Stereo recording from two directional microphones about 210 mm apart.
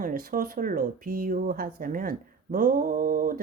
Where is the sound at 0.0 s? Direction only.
40° right (ahead or behind).